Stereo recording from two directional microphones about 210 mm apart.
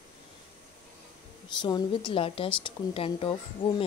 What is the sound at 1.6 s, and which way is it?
Speech, 20° left (ahead or behind).